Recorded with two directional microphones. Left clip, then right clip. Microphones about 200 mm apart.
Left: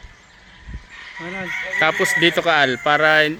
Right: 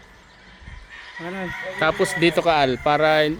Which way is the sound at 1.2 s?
50° right (ahead or behind).